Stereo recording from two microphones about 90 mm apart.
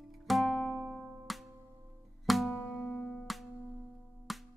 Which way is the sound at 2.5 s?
15° left (ahead or behind).